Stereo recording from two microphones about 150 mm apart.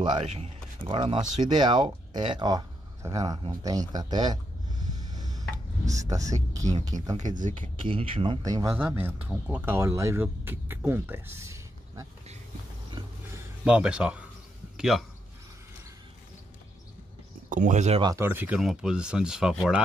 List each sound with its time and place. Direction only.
0.8 s speech: 30° right (ahead or behind)
7.2 s speech: 55° right (ahead or behind)
7.9 s speech: 35° right (ahead or behind)
8.4 s speech: 25° right (ahead or behind)
8.7 s speech: 15° right (ahead or behind)
13.7 s a man's voice: 5° right (ahead or behind)
17.5 s speech: 60° right (ahead or behind)
18.0 s speech: 20° right (ahead or behind)